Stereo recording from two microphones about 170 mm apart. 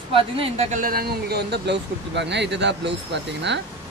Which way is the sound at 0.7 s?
60° right (ahead or behind).